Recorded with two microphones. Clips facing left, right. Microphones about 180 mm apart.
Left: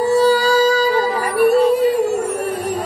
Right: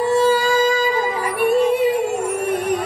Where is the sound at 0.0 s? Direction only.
40° left (ahead or behind).